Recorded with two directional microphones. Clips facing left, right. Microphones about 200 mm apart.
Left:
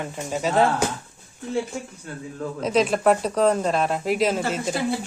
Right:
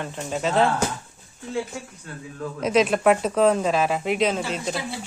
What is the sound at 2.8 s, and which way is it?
A woman's voice, centre (ahead or behind).